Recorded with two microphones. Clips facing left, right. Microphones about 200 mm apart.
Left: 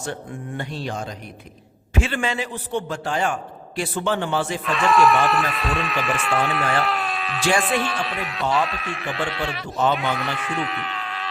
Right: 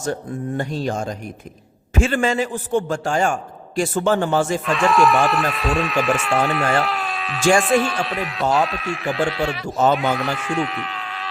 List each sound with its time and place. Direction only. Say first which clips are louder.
0.0 s a man's voice: right 6 dB; 45° right (ahead or behind)
4.6 s speech: left 3 dB; centre (ahead or behind)